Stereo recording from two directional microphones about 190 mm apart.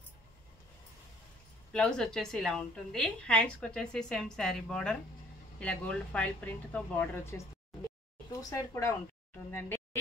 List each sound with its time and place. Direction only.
1.7 s a woman's voice: 5° left (ahead or behind)